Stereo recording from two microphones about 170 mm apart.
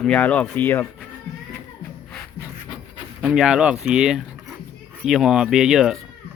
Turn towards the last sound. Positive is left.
turn(degrees=-5)  # may be behind; listen again after turning